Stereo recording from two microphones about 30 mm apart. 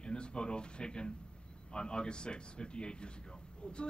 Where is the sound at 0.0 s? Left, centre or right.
Left.